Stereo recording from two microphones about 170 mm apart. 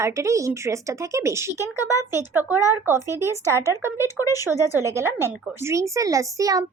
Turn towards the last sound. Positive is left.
turn(degrees=-20)  # may be behind; listen again after turning